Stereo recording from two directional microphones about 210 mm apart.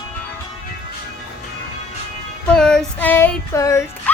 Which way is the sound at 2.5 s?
5° left (ahead or behind).